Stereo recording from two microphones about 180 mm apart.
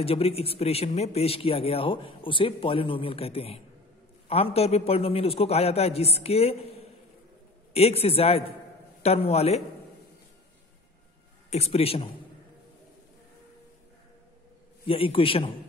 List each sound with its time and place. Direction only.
0.0 s a man's voice: 35° left (ahead or behind)
11.5 s a man's voice: 35° left (ahead or behind)
14.9 s a man's voice: 30° left (ahead or behind)